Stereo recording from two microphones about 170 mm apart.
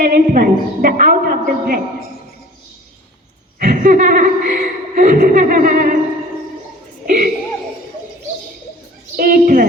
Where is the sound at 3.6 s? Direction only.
55° right (ahead or behind).